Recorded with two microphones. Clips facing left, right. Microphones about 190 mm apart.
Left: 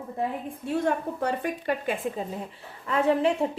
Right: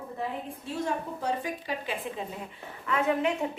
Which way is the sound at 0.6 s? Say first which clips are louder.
Left 7 dB; 60° left (ahead or behind).